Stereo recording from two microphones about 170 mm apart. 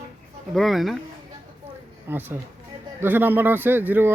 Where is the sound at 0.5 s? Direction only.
Centre (ahead or behind).